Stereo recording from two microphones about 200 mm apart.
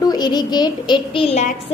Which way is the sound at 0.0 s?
20° left (ahead or behind).